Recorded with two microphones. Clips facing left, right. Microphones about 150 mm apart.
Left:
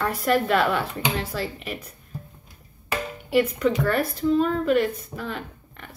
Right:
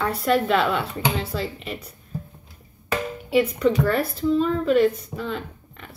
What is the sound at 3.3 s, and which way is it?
Speech, centre (ahead or behind).